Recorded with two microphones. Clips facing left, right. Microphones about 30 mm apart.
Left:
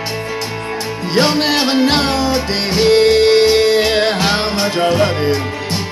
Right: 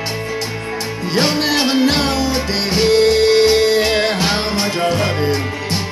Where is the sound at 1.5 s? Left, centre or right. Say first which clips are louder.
Left 1 dB; left.